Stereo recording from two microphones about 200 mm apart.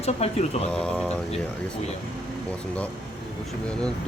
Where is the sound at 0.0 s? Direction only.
30° left (ahead or behind).